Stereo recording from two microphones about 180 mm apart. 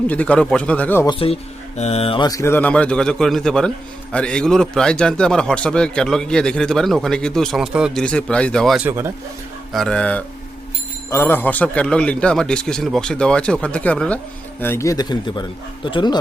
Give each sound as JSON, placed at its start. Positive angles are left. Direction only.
{"t": 0.1, "sound": "speech", "side_deg": 5}
{"t": 1.0, "sound": "a man's voice", "side_deg": 30}
{"t": 8.9, "sound": "speech", "side_deg": -15}
{"t": 9.7, "sound": "a man's voice", "side_deg": 5}